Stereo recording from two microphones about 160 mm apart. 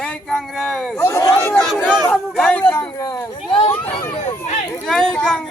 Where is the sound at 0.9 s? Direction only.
15° left (ahead or behind).